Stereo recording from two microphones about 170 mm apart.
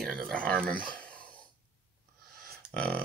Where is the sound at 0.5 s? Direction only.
5° left (ahead or behind).